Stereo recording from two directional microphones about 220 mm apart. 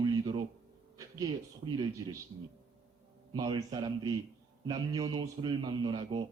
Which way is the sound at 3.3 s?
20° right (ahead or behind).